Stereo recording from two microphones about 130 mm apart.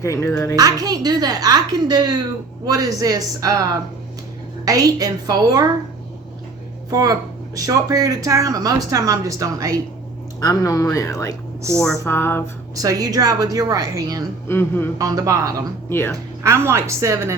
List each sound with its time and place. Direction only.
0.0 s speech: 20° left (ahead or behind)
0.5 s speech: 30° right (ahead or behind)
6.9 s speech: 30° right (ahead or behind)
10.4 s speech: 25° left (ahead or behind)
12.0 s a sound: 20° left (ahead or behind)
12.7 s speech: 25° right (ahead or behind)
14.4 s a sound: 20° left (ahead or behind)
14.9 s speech: 25° right (ahead or behind)
15.9 s a sound: 20° left (ahead or behind)
16.1 s speech: 25° right (ahead or behind)